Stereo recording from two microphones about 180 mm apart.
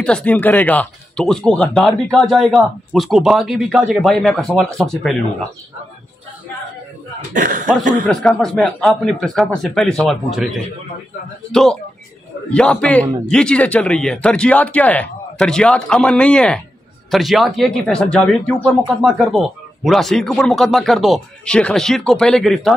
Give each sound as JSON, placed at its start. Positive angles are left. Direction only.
{"t": 0.0, "sound": "speech", "side_deg": 5}
{"t": 7.3, "sound": "speech", "side_deg": -45}
{"t": 8.1, "sound": "speech", "side_deg": 5}